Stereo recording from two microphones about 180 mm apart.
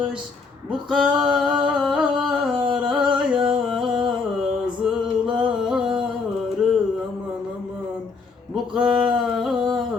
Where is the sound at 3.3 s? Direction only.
30° right (ahead or behind).